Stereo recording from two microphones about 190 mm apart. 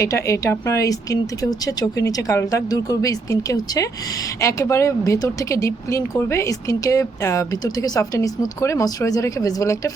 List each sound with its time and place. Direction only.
0.0 s speech: 15° left (ahead or behind)